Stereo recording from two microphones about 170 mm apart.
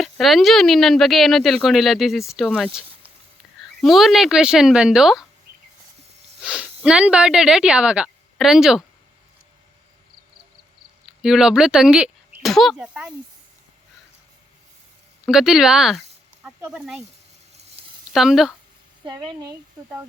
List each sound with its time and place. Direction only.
0.0 s speech: centre (ahead or behind)
3.8 s speech: centre (ahead or behind)
6.4 s speech: 5° right (ahead or behind)
11.2 s speech: 5° right (ahead or behind)
15.3 s speech: 5° right (ahead or behind)
16.4 s snake: 15° right (ahead or behind)
16.7 s speech: 5° right (ahead or behind)
18.1 s speech: centre (ahead or behind)
19.0 s speech: 20° right (ahead or behind)